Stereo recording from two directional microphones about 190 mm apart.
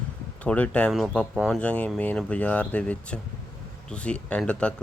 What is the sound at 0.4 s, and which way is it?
Speech, 5° left (ahead or behind).